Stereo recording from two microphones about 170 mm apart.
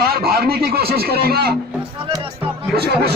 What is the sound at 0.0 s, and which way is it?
A man's voice, 65° right (ahead or behind).